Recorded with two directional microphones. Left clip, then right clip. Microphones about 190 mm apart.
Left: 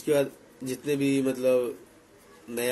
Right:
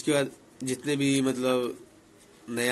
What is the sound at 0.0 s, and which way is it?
A man's voice, 40° right (ahead or behind).